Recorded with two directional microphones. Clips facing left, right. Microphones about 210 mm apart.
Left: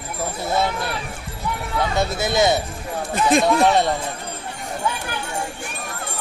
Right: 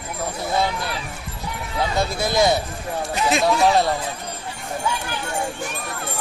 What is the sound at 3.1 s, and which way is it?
Speech, 50° left (ahead or behind).